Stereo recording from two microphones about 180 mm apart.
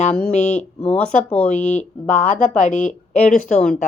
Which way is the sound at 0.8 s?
5° left (ahead or behind).